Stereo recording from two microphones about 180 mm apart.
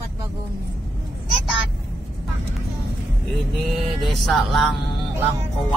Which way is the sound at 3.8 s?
Centre (ahead or behind).